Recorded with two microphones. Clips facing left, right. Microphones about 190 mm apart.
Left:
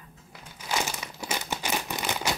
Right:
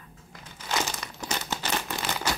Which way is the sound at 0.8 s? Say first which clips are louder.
Even; 10° left (ahead or behind).